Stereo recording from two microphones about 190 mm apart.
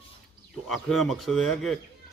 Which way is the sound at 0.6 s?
Centre (ahead or behind).